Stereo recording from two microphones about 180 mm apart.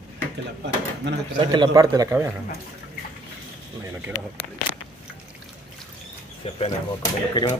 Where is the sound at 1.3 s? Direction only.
25° right (ahead or behind).